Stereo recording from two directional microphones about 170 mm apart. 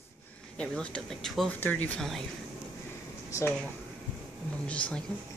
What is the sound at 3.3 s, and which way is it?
Speech, 15° left (ahead or behind).